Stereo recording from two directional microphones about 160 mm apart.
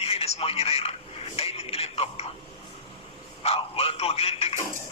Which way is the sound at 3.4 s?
40° left (ahead or behind).